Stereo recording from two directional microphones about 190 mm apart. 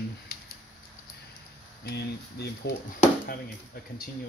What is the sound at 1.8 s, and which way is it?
Speech, 55° left (ahead or behind).